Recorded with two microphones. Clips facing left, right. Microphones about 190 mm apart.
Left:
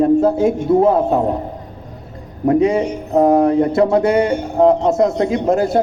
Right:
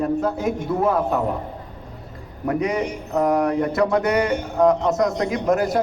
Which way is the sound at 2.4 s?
25° left (ahead or behind).